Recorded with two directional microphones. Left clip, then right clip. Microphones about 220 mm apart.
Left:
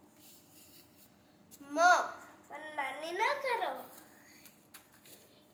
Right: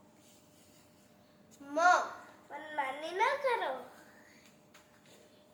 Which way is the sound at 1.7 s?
15° left (ahead or behind).